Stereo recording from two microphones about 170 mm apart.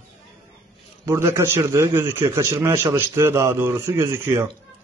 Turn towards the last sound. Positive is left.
turn(degrees=-15)  # may be behind; listen again after turning